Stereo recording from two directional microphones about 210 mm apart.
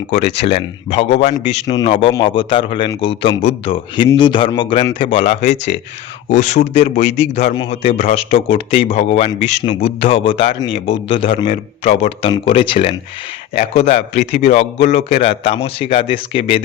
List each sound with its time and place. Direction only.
0.4 s speech: 30° left (ahead or behind)